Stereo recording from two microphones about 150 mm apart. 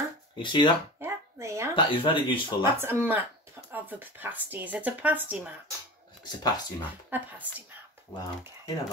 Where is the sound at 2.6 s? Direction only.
15° right (ahead or behind).